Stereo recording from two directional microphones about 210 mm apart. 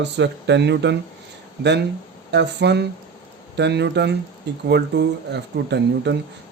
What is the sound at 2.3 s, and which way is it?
Speech, 55° right (ahead or behind).